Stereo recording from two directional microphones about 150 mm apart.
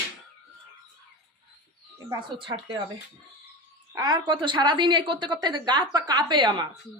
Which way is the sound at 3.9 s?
30° right (ahead or behind).